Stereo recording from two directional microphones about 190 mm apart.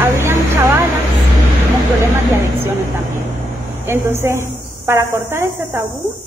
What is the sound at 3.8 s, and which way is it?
Speech, 10° right (ahead or behind).